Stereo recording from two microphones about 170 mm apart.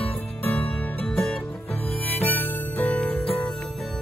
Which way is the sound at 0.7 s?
10° left (ahead or behind).